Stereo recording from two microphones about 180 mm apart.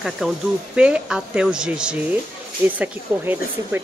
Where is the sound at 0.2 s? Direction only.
5° right (ahead or behind).